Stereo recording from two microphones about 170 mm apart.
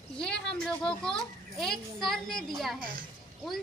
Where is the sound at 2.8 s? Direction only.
55° right (ahead or behind).